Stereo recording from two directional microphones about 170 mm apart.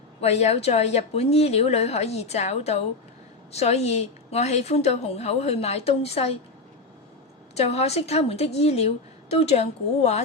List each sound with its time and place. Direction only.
0.2 s a woman's voice: 40° left (ahead or behind)
7.5 s a woman's voice: 40° left (ahead or behind)